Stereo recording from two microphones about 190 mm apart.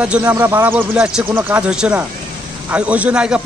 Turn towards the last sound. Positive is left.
turn(degrees=-5)  # may be behind; listen again after turning